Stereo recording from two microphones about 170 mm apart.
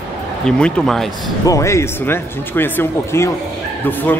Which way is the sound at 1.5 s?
15° left (ahead or behind).